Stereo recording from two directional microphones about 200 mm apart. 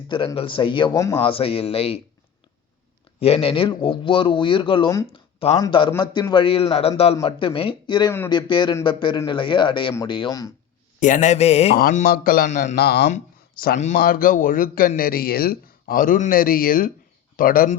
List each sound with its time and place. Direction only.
0.1 s speech: 25° left (ahead or behind)
1.2 s speech: 25° left (ahead or behind)
3.2 s speech: 30° left (ahead or behind)
11.0 s a man's voice: 40° left (ahead or behind)
11.8 s speech: 45° left (ahead or behind)